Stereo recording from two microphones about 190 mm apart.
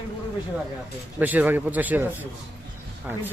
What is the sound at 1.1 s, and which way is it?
Speech, 10° right (ahead or behind).